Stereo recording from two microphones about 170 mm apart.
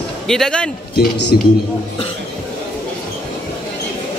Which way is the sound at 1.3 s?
60° left (ahead or behind).